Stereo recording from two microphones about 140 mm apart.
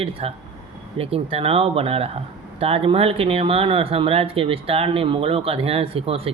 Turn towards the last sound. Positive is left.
turn(degrees=-45)  # may be behind; listen again after turning